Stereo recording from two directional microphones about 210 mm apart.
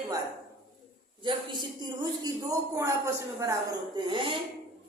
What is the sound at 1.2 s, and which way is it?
A woman's voice, 20° right (ahead or behind).